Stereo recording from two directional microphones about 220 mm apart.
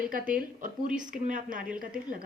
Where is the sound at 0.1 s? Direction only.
40° right (ahead or behind).